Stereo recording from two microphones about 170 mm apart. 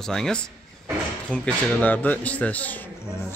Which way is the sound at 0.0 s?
5° left (ahead or behind).